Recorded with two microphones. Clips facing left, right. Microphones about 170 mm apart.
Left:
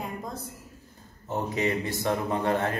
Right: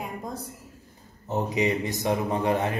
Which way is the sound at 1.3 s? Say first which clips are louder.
Right 3 dB; 15° right (ahead or behind).